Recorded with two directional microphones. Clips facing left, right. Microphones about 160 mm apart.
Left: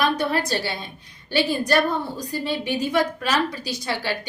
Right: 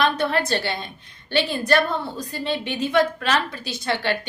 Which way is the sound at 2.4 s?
25° right (ahead or behind).